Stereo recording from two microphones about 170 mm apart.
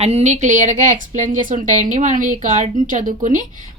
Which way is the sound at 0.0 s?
40° right (ahead or behind).